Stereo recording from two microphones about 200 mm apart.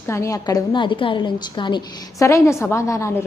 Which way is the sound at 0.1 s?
15° left (ahead or behind).